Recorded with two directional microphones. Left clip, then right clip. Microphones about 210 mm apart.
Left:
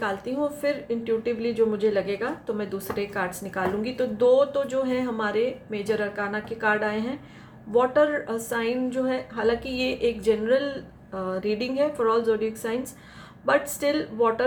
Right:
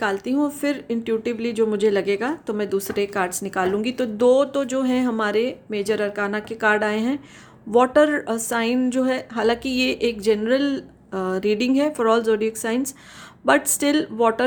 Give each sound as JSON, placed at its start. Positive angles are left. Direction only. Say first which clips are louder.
{"t": 0.0, "sound": "a woman's voice", "louder": "right 5 dB", "side_deg": -50}